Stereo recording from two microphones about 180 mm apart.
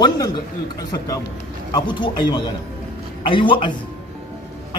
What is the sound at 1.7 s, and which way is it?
A man's voice, 25° left (ahead or behind).